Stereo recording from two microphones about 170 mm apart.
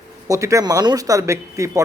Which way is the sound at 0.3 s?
20° right (ahead or behind).